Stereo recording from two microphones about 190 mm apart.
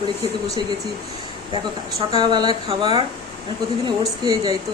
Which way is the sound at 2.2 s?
25° right (ahead or behind).